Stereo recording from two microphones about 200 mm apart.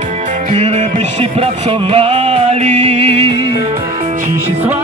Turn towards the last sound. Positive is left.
turn(degrees=-30)  # may be behind; listen again after turning